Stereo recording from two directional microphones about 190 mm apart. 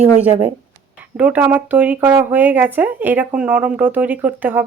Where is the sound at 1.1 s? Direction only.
10° right (ahead or behind).